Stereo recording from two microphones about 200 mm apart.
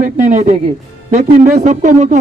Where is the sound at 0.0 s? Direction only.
40° right (ahead or behind).